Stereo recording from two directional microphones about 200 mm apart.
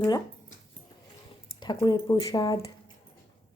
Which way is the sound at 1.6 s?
20° left (ahead or behind).